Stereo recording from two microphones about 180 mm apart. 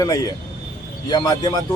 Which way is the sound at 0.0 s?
20° left (ahead or behind).